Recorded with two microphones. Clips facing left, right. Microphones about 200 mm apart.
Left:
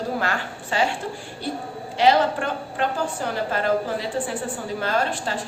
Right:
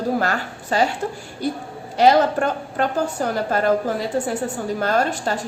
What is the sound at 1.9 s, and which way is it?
A woman's voice, 45° right (ahead or behind).